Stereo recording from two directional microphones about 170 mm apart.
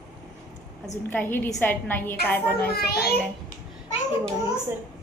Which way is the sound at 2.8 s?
65° left (ahead or behind).